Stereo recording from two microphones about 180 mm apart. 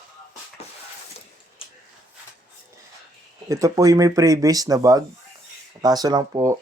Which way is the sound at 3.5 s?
20° right (ahead or behind).